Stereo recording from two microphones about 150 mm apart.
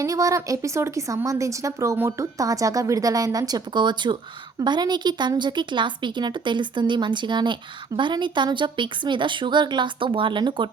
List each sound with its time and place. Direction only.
0.0 s a woman's voice: 20° right (ahead or behind)